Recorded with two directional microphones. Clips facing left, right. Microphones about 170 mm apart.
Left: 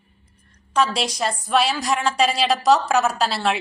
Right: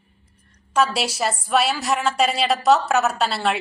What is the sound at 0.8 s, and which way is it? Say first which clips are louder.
A woman's voice: even; 5° right (ahead or behind).